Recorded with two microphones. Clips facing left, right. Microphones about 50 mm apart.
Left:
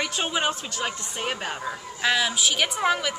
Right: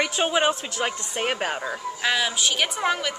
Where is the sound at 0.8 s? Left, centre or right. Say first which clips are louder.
Right 4 dB; right.